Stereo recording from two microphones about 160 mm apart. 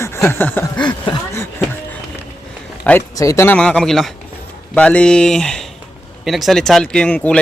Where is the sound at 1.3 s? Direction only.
15° left (ahead or behind).